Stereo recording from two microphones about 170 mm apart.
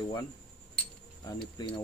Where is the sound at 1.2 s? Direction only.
25° left (ahead or behind).